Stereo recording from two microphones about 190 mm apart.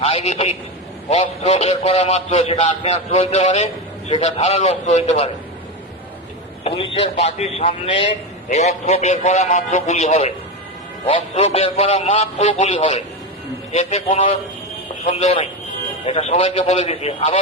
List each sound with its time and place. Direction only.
0.0 s a man's voice: 35° left (ahead or behind)
6.7 s a man's voice: 30° left (ahead or behind)